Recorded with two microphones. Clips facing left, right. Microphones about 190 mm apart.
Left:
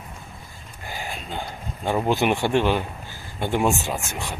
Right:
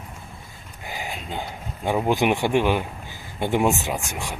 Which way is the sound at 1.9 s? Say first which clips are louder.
Right 1 dB; 10° right (ahead or behind).